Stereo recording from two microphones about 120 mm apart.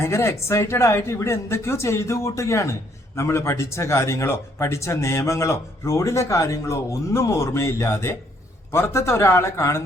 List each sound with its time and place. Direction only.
0.0 s speech: 20° left (ahead or behind)